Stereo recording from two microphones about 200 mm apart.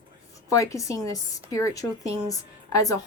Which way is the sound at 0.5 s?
15° left (ahead or behind).